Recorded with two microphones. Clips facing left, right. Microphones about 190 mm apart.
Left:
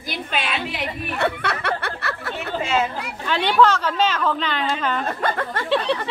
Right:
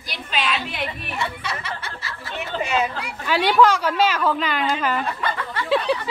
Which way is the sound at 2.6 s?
15° right (ahead or behind).